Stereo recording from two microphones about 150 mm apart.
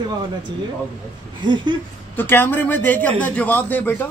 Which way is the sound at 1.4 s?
30° right (ahead or behind).